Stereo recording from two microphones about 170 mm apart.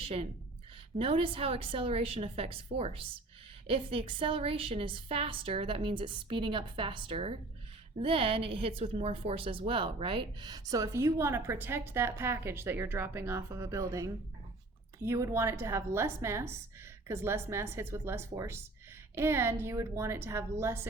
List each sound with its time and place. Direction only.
0.0 s a woman's voice: 35° right (ahead or behind); by 20.8 s 15° right (ahead or behind)